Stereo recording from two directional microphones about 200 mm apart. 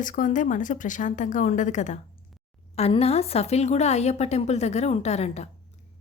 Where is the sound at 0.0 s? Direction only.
40° left (ahead or behind).